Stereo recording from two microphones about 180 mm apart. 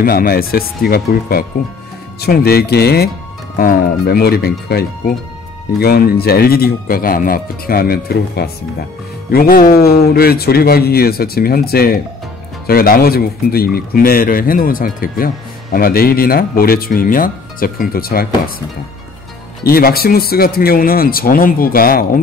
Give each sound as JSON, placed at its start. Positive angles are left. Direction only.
{"t": 0.0, "sound": "a man's voice", "side_deg": 55}
{"t": 19.6, "sound": "a man's voice", "side_deg": 55}